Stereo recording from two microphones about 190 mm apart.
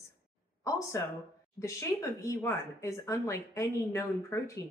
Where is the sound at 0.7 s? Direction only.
15° left (ahead or behind).